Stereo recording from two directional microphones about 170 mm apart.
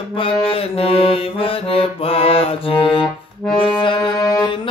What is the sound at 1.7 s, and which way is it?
Music, 35° left (ahead or behind).